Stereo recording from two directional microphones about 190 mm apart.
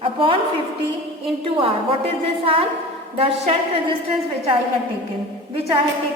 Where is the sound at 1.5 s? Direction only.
30° right (ahead or behind).